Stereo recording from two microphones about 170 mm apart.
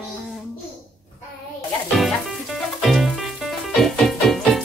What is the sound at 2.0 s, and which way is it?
Music, centre (ahead or behind).